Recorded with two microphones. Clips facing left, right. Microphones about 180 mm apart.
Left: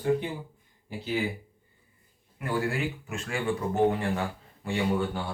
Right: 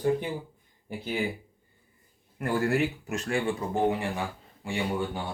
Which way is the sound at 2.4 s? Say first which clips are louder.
Right 3 dB; 45° right (ahead or behind).